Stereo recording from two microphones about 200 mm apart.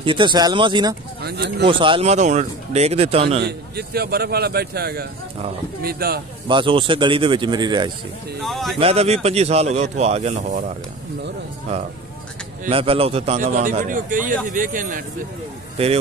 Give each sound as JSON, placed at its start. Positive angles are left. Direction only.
{"t": 0.0, "sound": "speech", "side_deg": -25}
{"t": 1.2, "sound": "speech", "side_deg": -55}
{"t": 1.7, "sound": "a man's voice", "side_deg": -25}
{"t": 3.4, "sound": "a man's voice", "side_deg": -50}
{"t": 6.4, "sound": "speech", "side_deg": -25}
{"t": 8.4, "sound": "speech", "side_deg": 0}
{"t": 8.7, "sound": "a man's voice", "side_deg": -30}
{"t": 12.6, "sound": "a man's voice", "side_deg": -30}
{"t": 15.8, "sound": "speech", "side_deg": -30}